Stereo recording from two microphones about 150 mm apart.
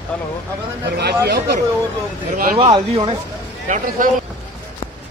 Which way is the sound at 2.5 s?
40° right (ahead or behind).